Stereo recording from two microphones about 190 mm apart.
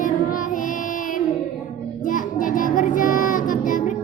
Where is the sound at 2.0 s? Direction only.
45° left (ahead or behind).